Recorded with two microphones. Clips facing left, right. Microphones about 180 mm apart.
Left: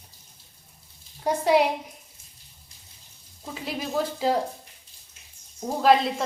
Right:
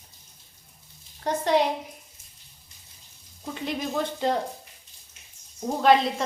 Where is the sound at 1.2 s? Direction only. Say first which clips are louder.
Left 2 dB; 10° left (ahead or behind).